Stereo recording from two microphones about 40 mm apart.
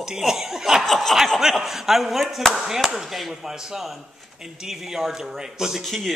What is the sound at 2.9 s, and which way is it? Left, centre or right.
A man's voice, centre.